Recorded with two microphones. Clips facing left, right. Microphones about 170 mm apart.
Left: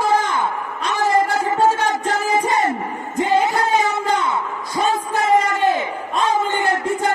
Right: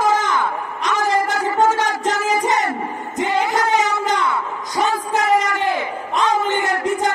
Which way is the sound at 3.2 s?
25° left (ahead or behind).